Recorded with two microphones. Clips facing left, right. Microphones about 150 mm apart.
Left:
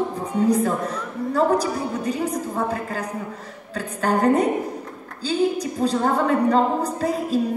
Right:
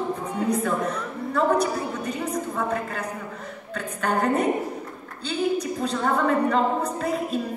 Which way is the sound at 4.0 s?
35° left (ahead or behind).